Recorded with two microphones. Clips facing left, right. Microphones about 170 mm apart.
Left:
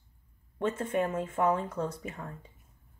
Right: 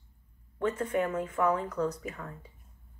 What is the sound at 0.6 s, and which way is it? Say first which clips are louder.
A woman's voice: even; 25° left (ahead or behind).